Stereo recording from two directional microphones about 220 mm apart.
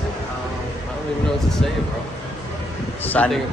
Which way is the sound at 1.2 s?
Centre (ahead or behind).